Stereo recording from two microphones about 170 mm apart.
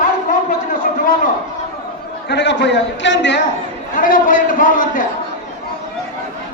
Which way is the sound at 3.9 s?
55° left (ahead or behind).